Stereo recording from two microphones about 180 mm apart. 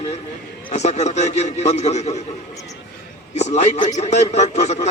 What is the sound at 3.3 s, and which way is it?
A man's voice, 40° left (ahead or behind).